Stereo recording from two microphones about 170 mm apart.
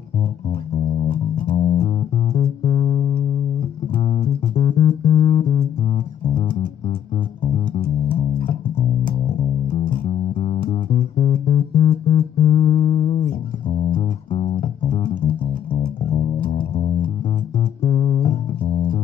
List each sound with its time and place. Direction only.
1.6 s music: 35° left (ahead or behind)
7.4 s music: 35° left (ahead or behind)
17.6 s bass guitar: 30° left (ahead or behind)